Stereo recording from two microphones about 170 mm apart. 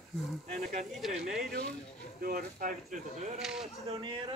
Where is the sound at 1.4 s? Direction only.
65° right (ahead or behind).